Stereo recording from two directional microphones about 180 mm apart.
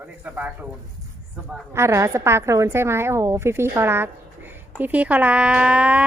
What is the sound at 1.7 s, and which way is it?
Speech, 15° right (ahead or behind).